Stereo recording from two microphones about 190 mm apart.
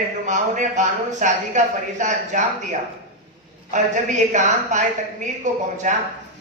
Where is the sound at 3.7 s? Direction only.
40° right (ahead or behind).